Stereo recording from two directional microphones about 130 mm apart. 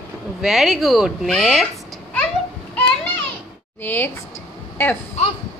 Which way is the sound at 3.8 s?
15° left (ahead or behind).